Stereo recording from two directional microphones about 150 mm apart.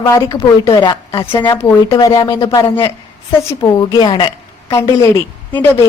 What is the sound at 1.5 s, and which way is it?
A woman's voice, 20° left (ahead or behind).